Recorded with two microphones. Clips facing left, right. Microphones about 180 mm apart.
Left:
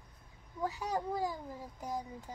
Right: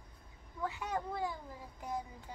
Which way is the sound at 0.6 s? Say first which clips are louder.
Left 3 dB; 35° left (ahead or behind).